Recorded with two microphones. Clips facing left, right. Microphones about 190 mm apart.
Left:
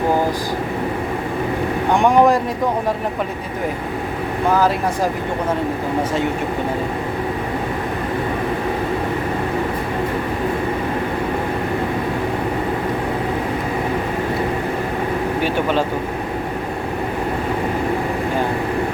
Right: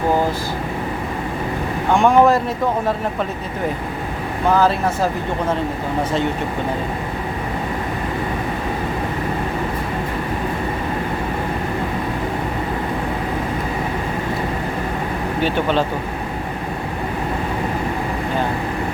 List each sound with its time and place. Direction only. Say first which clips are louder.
1.9 s speech: right 1 dB; 15° left (ahead or behind)